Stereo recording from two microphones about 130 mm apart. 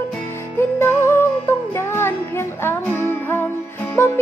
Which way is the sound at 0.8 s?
20° left (ahead or behind).